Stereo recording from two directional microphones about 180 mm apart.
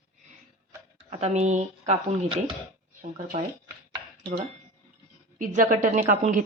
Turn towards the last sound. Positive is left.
turn(degrees=-45)  # may be behind; listen again after turning